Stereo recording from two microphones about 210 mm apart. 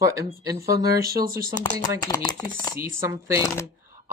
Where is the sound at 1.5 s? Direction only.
20° left (ahead or behind).